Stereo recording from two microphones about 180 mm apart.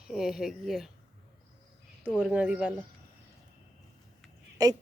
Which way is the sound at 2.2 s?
5° right (ahead or behind).